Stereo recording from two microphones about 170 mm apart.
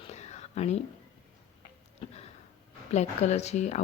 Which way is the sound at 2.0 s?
35° left (ahead or behind).